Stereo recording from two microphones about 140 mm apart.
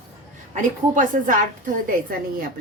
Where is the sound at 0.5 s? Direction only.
70° right (ahead or behind).